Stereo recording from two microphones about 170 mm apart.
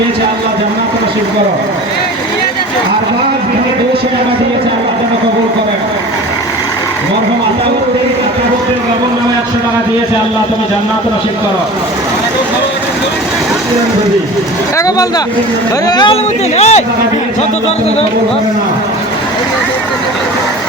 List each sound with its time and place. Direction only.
14.8 s speech: 20° left (ahead or behind)
16.6 s speech: 40° left (ahead or behind)